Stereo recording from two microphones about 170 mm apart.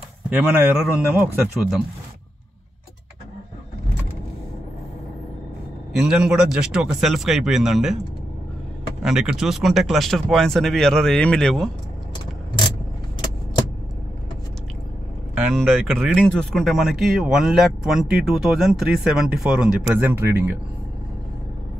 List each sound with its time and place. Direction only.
0.3 s speech: 5° right (ahead or behind)
5.9 s speech: 5° right (ahead or behind)
9.0 s speech: 5° right (ahead or behind)
15.3 s speech: centre (ahead or behind)